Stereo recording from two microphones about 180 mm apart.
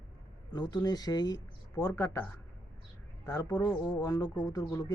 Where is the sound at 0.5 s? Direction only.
20° left (ahead or behind).